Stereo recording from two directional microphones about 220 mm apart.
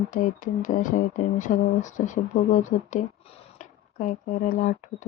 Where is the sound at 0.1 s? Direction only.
35° left (ahead or behind).